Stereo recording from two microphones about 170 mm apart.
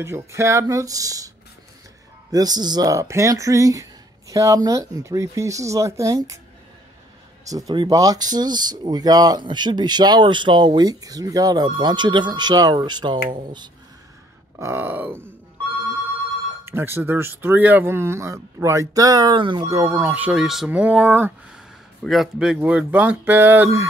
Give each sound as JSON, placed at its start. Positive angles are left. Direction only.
{"t": 0.0, "sound": "speech", "side_deg": -15}
{"t": 2.3, "sound": "speech", "side_deg": -25}
{"t": 7.4, "sound": "speech", "side_deg": -20}
{"t": 14.6, "sound": "speech", "side_deg": -10}
{"t": 16.6, "sound": "speech", "side_deg": -15}